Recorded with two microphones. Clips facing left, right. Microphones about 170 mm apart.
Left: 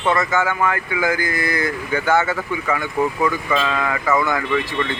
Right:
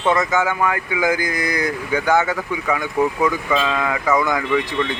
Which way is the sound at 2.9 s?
Centre (ahead or behind).